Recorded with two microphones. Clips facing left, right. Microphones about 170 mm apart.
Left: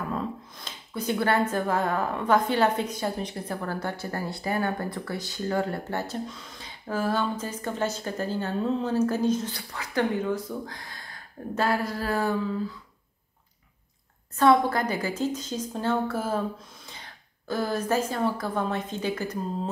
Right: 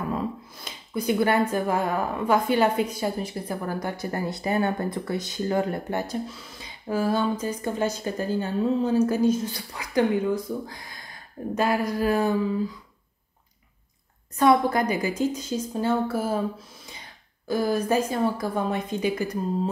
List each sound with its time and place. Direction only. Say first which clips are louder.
0.1 s speech: right 2 dB; 10° right (ahead or behind)
14.4 s speech: right 1 dB; 15° right (ahead or behind)
17.5 s speech: right 3 dB; 10° right (ahead or behind)